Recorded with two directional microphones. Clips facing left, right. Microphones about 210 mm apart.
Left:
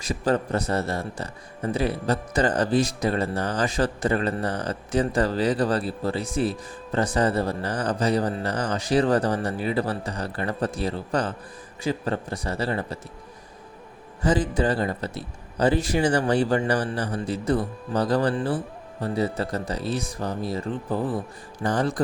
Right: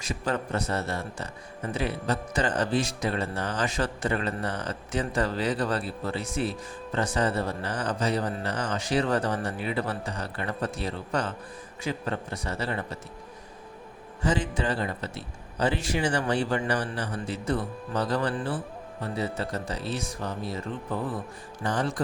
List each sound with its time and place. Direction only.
0.0 s a man's voice: 35° left (ahead or behind)
14.2 s a man's voice: 35° left (ahead or behind)